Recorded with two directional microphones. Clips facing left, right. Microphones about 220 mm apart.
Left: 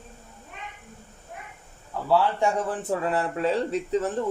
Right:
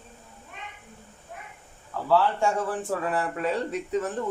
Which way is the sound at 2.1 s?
20° left (ahead or behind).